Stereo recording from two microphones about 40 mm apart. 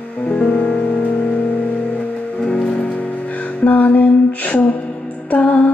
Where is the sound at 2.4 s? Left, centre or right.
Left.